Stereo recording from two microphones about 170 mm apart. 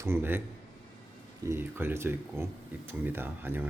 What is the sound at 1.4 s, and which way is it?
Speech, 15° right (ahead or behind).